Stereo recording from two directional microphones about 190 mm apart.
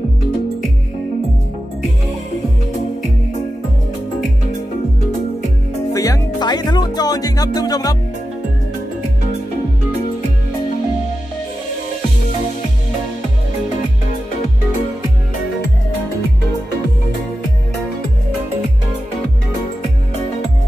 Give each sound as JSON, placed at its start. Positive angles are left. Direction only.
{"t": 5.9, "sound": "music", "side_deg": 20}